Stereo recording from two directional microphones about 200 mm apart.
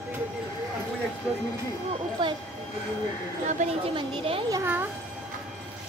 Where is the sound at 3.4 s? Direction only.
35° right (ahead or behind).